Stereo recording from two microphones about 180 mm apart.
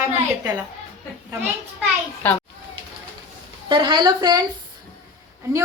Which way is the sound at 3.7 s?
25° right (ahead or behind).